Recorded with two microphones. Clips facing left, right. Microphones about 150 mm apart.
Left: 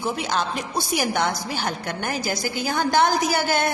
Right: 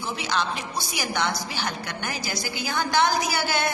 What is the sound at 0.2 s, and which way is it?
A woman's voice, 45° left (ahead or behind).